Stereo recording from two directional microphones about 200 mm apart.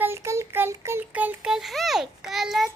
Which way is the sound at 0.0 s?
15° right (ahead or behind).